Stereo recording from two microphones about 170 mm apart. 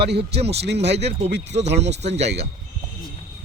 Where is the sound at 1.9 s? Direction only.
40° right (ahead or behind).